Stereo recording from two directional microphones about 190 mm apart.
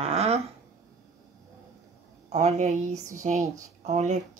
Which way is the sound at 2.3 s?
35° right (ahead or behind).